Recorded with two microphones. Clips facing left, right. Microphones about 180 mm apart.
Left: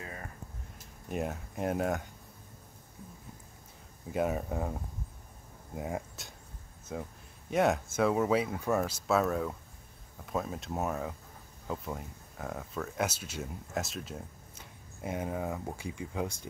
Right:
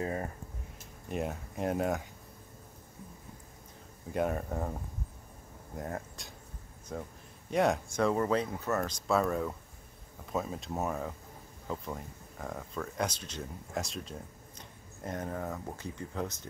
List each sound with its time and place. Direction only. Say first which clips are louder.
0.0 s speech: right 10 dB; 35° right (ahead or behind)
1.1 s speech: even; centre (ahead or behind)
4.1 s speech: left 1 dB; 5° left (ahead or behind)
5.8 s speech: left 2 dB; 5° left (ahead or behind)